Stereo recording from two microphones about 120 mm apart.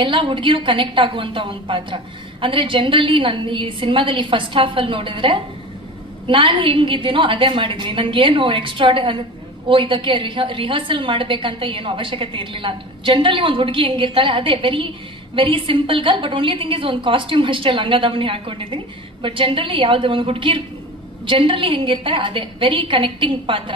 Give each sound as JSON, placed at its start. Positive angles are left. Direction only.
{"t": 0.0, "sound": "a woman's voice", "side_deg": -45}